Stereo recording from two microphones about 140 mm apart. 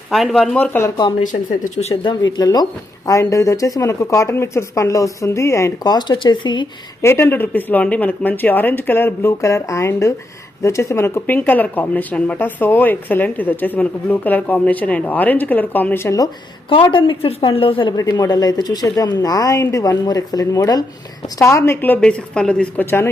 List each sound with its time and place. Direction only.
0.1 s speech: centre (ahead or behind)
1.2 s speech: 65° left (ahead or behind)
2.0 s speech: 30° left (ahead or behind)
7.0 s speech: 15° left (ahead or behind)
16.6 s a woman's voice: 35° left (ahead or behind)
17.9 s speech: 25° left (ahead or behind)